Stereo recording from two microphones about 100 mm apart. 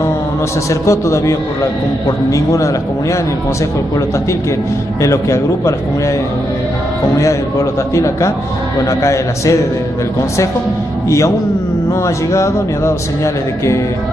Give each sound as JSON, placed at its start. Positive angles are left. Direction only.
{"t": 0.7, "sound": "a man's voice", "side_deg": 30}
{"t": 5.0, "sound": "a man's voice", "side_deg": 30}
{"t": 7.2, "sound": "a man's voice", "side_deg": 30}
{"t": 11.1, "sound": "a man's voice", "side_deg": 30}